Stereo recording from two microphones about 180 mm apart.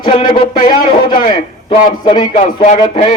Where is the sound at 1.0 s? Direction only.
25° left (ahead or behind).